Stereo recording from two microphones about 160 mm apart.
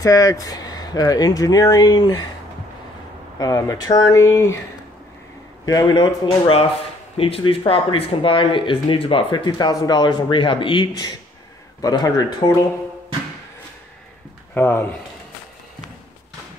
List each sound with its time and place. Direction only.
0.0 s speech: 20° left (ahead or behind)
3.3 s speech: 20° left (ahead or behind)
5.7 s speech: 25° left (ahead or behind)
14.5 s speech: 10° left (ahead or behind)